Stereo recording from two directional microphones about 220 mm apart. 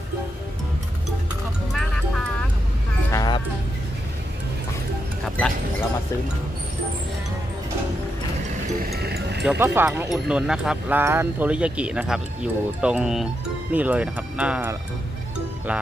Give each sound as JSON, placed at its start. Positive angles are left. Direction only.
{"t": 1.7, "sound": "music", "side_deg": 0}
{"t": 3.1, "sound": "music", "side_deg": 20}
{"t": 8.9, "sound": "speech", "side_deg": -45}
{"t": 9.4, "sound": "speech", "side_deg": -5}